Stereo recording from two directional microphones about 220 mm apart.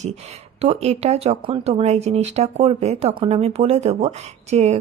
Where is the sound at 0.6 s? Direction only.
30° right (ahead or behind).